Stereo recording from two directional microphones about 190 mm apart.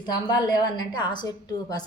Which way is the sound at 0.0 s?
20° left (ahead or behind).